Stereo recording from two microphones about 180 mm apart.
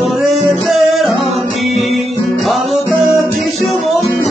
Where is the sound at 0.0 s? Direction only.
Centre (ahead or behind).